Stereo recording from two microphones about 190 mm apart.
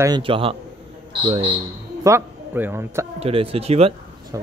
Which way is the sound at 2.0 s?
10° right (ahead or behind).